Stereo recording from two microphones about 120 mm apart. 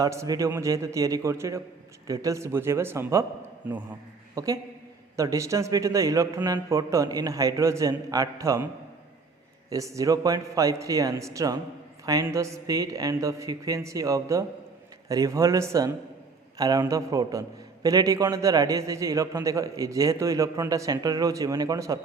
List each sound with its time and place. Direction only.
0.0 s a man's voice: 25° right (ahead or behind)
3.6 s a man's voice: 10° right (ahead or behind)
4.4 s a man's voice: 25° right (ahead or behind)
9.6 s a man's voice: 25° right (ahead or behind)